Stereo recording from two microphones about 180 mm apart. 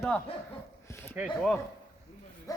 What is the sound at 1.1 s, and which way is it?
Speech, 5° right (ahead or behind).